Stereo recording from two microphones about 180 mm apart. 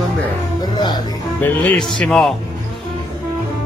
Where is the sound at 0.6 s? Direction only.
25° left (ahead or behind).